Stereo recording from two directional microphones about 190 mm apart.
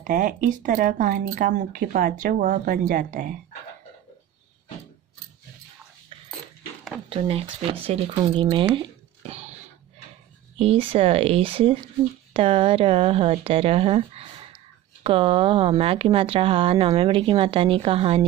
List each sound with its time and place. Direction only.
0.0 s speech: 45° right (ahead or behind)
7.1 s speech: 30° right (ahead or behind)
9.3 s a sound: 35° right (ahead or behind)
10.6 s speech: 30° right (ahead or behind)